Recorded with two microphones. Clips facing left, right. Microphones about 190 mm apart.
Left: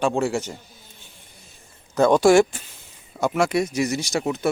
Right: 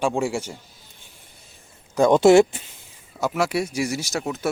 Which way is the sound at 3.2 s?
5° right (ahead or behind).